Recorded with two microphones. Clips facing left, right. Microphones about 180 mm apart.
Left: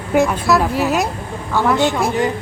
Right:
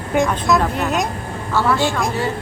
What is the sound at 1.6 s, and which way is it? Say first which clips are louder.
Speech: left 2 dB; 15° left (ahead or behind).